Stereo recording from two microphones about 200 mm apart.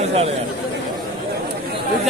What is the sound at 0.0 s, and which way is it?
Chatter, 30° right (ahead or behind).